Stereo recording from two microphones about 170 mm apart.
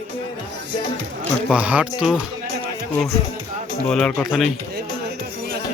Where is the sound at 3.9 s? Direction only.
5° left (ahead or behind).